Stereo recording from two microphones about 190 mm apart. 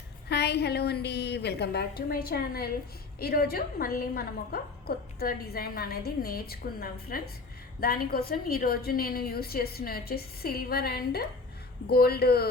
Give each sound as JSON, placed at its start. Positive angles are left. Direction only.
{"t": 0.3, "sound": "a woman's voice", "side_deg": 60}